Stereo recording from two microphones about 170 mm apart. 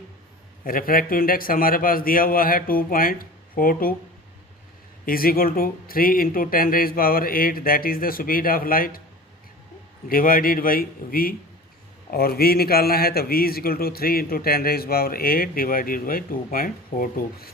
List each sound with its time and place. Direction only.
0.6 s a man's voice: 55° left (ahead or behind)
5.0 s a man's voice: 60° left (ahead or behind)
10.1 s a man's voice: 55° left (ahead or behind)